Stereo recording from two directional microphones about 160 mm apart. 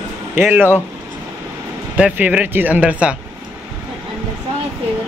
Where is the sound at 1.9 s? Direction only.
10° right (ahead or behind).